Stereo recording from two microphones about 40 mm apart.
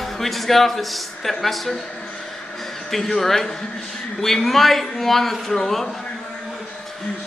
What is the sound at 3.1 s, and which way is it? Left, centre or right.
A man's voice, centre.